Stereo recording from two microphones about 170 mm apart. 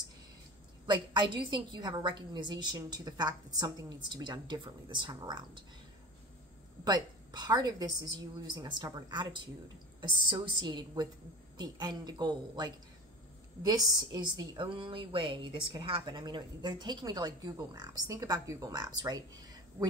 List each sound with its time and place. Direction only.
0.8 s a woman's voice: 30° right (ahead or behind)
6.8 s a woman's voice: 25° right (ahead or behind)